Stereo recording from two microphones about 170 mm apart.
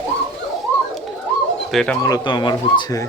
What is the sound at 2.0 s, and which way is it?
Speech, 25° left (ahead or behind).